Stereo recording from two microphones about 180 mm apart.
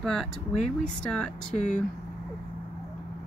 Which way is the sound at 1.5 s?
45° left (ahead or behind).